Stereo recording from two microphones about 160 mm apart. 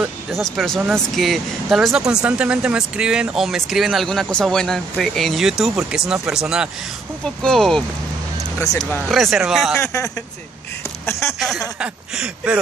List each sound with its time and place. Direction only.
0.0 s speech: centre (ahead or behind)
9.8 s speech: 20° left (ahead or behind)
11.3 s speech: centre (ahead or behind)
11.8 s a sound: 5° right (ahead or behind)